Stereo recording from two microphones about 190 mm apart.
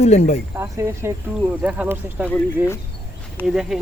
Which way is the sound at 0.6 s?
15° right (ahead or behind).